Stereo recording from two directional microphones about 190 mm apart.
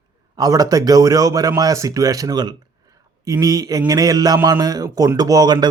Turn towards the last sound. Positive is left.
turn(degrees=-20)  # may be behind; listen again after turning